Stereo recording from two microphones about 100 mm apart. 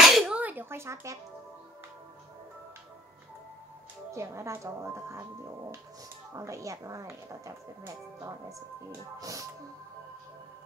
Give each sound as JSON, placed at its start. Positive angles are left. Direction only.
{"t": 0.0, "sound": "sneeze", "side_deg": 0}
{"t": 0.4, "sound": "a sound", "side_deg": -20}
{"t": 4.1, "sound": "speech", "side_deg": -30}
{"t": 6.3, "sound": "speech", "side_deg": -30}